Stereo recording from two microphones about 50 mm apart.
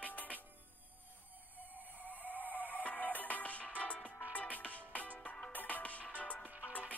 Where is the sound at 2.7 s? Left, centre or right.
Left.